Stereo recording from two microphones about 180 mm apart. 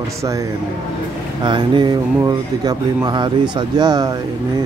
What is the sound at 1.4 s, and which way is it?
Speech, 25° right (ahead or behind).